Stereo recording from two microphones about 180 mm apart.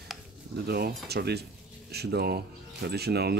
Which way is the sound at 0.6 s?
60° right (ahead or behind).